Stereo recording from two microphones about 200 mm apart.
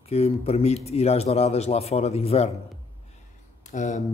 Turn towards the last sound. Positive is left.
turn(degrees=35)  # may be behind; listen again after turning